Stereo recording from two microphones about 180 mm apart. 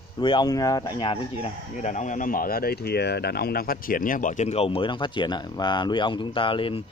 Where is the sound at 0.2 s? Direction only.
25° left (ahead or behind).